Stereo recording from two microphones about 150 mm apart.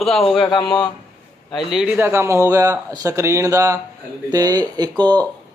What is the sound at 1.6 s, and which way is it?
Speech, 5° right (ahead or behind).